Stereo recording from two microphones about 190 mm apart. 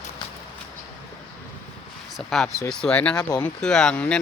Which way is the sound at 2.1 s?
Centre (ahead or behind).